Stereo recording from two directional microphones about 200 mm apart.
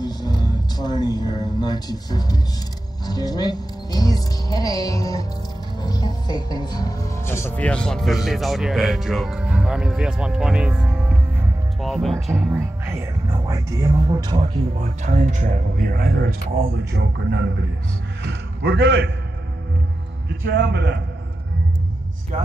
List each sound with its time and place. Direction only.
0.0 s a sound: 20° left (ahead or behind)
3.1 s speech: 20° left (ahead or behind); by 12.5 s centre (ahead or behind)
12.5 s speech: 15° right (ahead or behind)
14.8 s a man's voice: 40° right (ahead or behind); by 19.0 s 60° right (ahead or behind)
20.2 s a man's voice: 55° right (ahead or behind)